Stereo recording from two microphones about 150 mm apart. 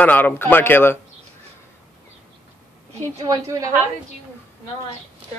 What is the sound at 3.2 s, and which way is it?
Speech, 20° right (ahead or behind).